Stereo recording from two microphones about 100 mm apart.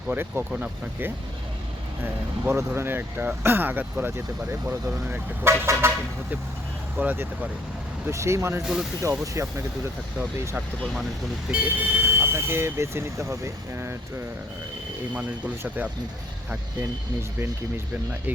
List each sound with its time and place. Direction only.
0.1 s speech: 20° right (ahead or behind)
2.6 s speech: 25° right (ahead or behind)
7.0 s speech: 15° right (ahead or behind)
8.1 s speech: 30° right (ahead or behind)
11.5 s speech: 15° right (ahead or behind)
15.1 s speech: 15° right (ahead or behind)